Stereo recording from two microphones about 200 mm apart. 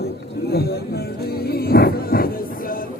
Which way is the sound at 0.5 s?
55° left (ahead or behind).